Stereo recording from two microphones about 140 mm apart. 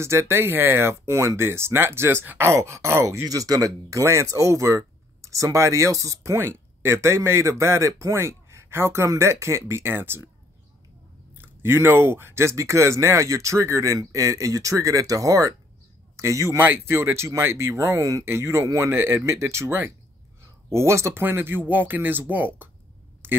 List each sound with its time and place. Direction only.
0.0 s speech: 20° right (ahead or behind)
11.3 s speech: 15° right (ahead or behind)
23.2 s a sound: 15° right (ahead or behind)